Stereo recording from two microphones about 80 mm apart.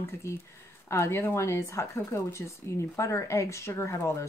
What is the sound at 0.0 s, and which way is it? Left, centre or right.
Speech, left.